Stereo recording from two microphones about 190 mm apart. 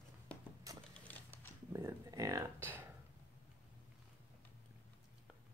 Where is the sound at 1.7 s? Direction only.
15° right (ahead or behind).